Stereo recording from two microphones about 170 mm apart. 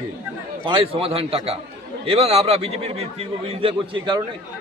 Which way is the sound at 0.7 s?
35° right (ahead or behind).